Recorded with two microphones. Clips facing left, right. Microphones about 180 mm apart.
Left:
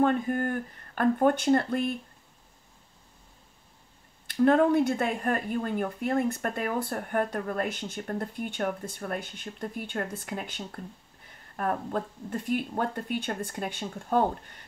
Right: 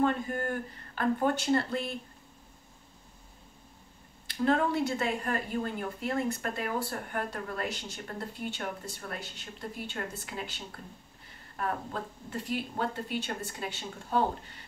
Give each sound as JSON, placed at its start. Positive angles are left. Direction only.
{"t": 0.9, "sound": "speech", "side_deg": 55}
{"t": 4.3, "sound": "speech", "side_deg": 50}